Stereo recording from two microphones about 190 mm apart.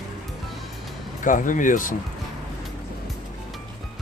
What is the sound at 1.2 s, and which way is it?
Speech, 45° left (ahead or behind).